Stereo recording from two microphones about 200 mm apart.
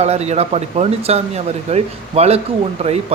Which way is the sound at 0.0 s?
30° right (ahead or behind).